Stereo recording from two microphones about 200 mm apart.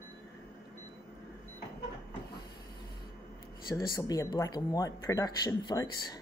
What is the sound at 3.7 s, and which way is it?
Speech, 15° left (ahead or behind).